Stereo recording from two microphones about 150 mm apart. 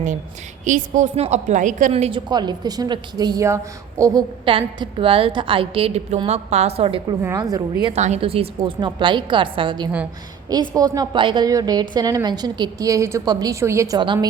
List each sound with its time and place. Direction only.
0.6 s a woman's voice: 55° right (ahead or behind)
1.9 s a woman's voice: 40° right (ahead or behind); by 4.2 s 20° right (ahead or behind)
4.4 s a woman's voice: 35° right (ahead or behind)
7.3 s a woman's voice: 25° right (ahead or behind)
7.9 s a woman's voice: 45° right (ahead or behind); by 14.3 s 30° right (ahead or behind)